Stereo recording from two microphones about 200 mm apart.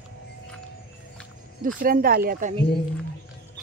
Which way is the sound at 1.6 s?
45° right (ahead or behind).